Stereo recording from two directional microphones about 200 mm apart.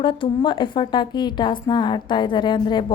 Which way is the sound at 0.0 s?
25° left (ahead or behind).